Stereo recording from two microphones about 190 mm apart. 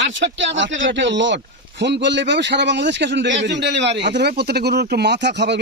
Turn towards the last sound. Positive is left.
turn(degrees=-65)  # may be behind; listen again after turning